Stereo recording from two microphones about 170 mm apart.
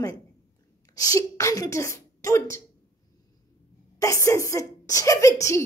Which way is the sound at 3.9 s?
20° left (ahead or behind).